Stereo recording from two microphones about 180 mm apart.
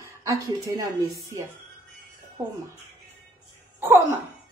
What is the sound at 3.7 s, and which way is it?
Speech, 10° right (ahead or behind).